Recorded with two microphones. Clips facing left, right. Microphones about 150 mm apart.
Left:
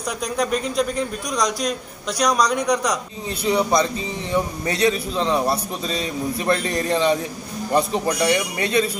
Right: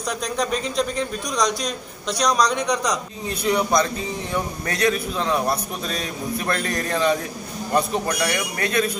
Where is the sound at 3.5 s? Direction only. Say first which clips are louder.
Left 1 dB; 20° left (ahead or behind).